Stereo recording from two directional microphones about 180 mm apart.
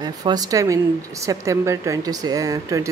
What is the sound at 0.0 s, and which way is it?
A woman's voice, 20° right (ahead or behind).